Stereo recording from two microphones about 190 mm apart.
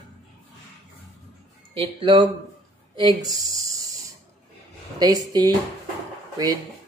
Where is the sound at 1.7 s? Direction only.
30° right (ahead or behind).